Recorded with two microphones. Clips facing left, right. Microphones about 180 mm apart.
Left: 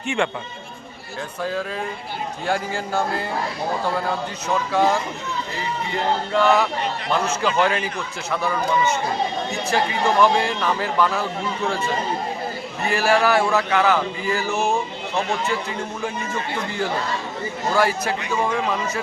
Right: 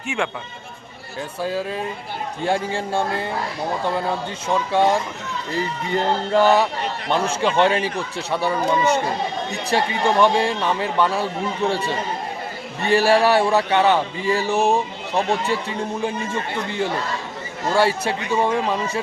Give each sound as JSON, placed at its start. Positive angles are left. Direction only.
{"t": 0.1, "sound": "a man's voice", "side_deg": -5}
{"t": 2.5, "sound": "a man's voice", "side_deg": -30}
{"t": 4.7, "sound": "a man's voice", "side_deg": -25}